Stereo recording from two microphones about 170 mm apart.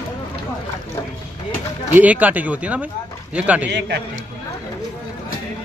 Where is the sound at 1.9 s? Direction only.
10° right (ahead or behind).